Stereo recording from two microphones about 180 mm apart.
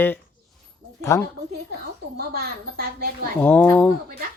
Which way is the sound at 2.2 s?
60° right (ahead or behind).